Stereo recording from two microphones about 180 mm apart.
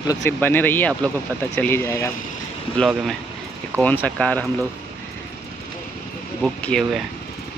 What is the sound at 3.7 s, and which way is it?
Speech, 10° right (ahead or behind).